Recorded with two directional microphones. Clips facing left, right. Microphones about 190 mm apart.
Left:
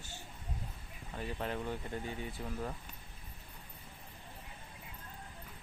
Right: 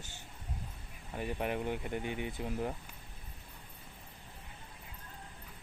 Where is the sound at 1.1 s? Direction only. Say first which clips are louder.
Right 3 dB; 15° right (ahead or behind).